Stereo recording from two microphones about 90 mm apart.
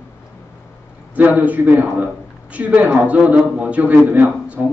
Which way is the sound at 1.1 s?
15° right (ahead or behind).